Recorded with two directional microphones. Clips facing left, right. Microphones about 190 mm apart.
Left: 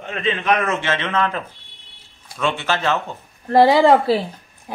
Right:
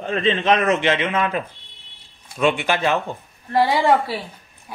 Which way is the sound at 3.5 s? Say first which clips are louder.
Left 5 dB; 40° left (ahead or behind).